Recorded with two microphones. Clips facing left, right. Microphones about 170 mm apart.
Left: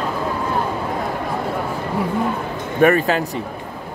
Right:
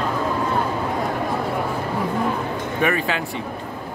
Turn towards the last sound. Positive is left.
turn(degrees=45)  # may be behind; listen again after turning